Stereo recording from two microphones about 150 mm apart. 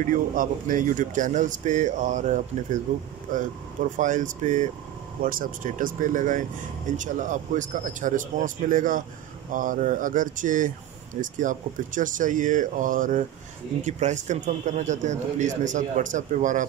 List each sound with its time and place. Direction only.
0.0 s speech: 65° right (ahead or behind)
5.2 s a man's voice: 70° right (ahead or behind)